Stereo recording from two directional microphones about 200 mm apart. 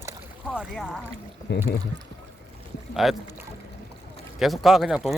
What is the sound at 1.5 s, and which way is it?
Speech, 55° left (ahead or behind).